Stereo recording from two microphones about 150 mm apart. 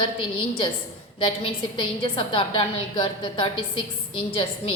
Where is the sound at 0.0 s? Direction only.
35° left (ahead or behind).